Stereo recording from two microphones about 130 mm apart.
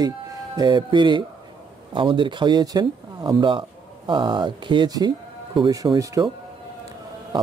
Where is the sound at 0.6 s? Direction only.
35° right (ahead or behind).